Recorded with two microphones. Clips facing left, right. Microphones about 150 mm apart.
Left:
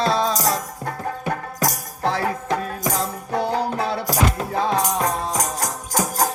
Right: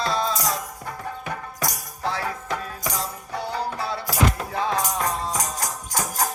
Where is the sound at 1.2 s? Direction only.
40° left (ahead or behind); by 4.0 s 65° left (ahead or behind).